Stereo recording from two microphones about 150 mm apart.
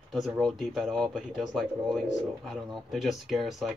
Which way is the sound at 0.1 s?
Centre (ahead or behind).